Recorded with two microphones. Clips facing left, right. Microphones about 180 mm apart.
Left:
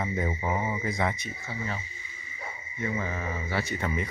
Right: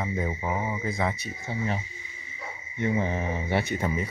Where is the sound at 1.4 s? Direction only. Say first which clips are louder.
Right 6 dB; 20° right (ahead or behind).